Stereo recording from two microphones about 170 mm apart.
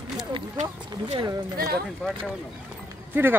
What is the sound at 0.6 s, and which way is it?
Speech, 40° right (ahead or behind).